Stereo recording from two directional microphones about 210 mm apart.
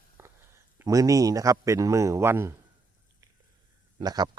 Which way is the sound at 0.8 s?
15° right (ahead or behind).